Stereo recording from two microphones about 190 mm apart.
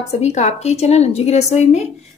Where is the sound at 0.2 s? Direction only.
35° left (ahead or behind).